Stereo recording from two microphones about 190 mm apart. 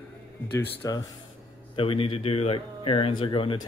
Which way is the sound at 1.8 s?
30° left (ahead or behind).